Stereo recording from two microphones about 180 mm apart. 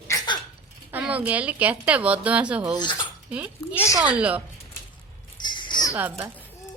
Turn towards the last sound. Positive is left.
turn(degrees=-10)  # may be behind; listen again after turning